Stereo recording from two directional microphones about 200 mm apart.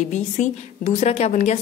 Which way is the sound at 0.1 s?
35° left (ahead or behind).